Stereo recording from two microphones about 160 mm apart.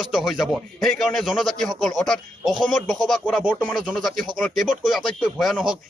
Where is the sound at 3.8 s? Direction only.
Centre (ahead or behind).